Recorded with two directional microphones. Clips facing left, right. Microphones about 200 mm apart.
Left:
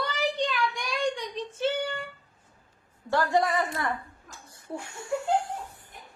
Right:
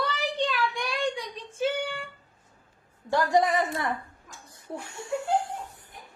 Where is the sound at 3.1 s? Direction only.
15° right (ahead or behind).